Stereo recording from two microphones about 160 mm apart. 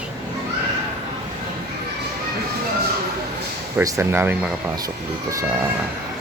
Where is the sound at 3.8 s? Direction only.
15° right (ahead or behind).